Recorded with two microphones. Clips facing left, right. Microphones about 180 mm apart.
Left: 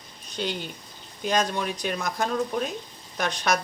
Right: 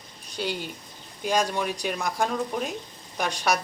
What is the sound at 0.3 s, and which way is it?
Speech, 10° right (ahead or behind).